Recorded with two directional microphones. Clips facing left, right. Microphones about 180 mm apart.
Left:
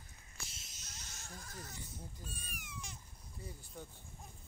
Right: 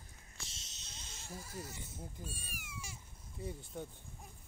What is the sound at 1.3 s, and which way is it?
Speech, 5° right (ahead or behind).